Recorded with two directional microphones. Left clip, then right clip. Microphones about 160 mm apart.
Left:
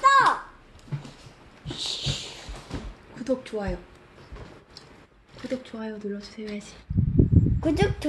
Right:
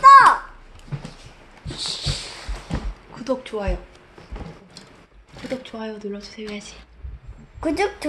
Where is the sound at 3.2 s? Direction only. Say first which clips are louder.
Right 3 dB; 30° left (ahead or behind).